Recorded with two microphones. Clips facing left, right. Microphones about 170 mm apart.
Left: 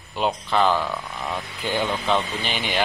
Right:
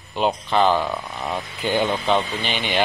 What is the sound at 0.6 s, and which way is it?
Speech, 25° right (ahead or behind).